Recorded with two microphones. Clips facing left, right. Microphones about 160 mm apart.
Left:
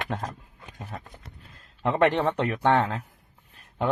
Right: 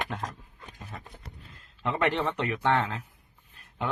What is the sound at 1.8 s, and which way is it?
A man's voice, 50° left (ahead or behind).